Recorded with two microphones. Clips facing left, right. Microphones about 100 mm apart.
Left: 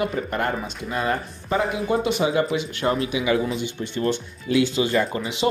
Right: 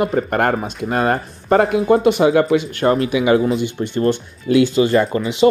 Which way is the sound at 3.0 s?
60° right (ahead or behind).